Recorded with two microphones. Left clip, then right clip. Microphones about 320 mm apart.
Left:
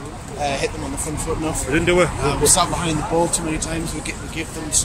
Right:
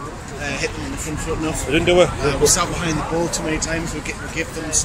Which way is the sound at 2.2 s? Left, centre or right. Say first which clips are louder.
Even; centre.